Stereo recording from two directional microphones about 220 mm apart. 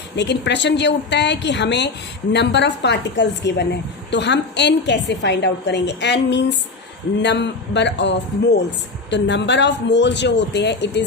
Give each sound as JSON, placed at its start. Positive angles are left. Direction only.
{"t": 0.2, "sound": "a woman's voice", "side_deg": 50}